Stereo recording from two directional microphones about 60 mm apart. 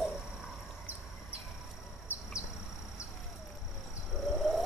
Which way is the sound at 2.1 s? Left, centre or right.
Left.